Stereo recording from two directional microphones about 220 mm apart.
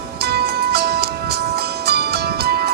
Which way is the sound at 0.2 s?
45° right (ahead or behind).